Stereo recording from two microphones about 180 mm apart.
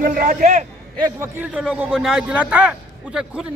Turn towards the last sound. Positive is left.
turn(degrees=-5)  # may be behind; listen again after turning